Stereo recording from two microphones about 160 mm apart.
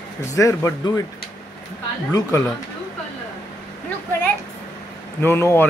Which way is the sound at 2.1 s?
20° left (ahead or behind).